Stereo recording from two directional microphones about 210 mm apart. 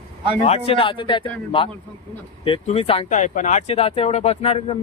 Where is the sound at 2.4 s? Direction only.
25° left (ahead or behind).